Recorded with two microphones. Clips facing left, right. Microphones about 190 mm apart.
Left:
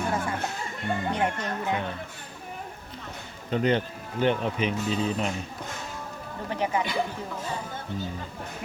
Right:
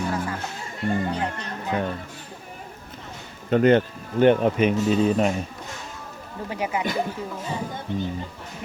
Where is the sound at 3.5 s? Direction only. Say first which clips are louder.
Right 7 dB; 55° right (ahead or behind).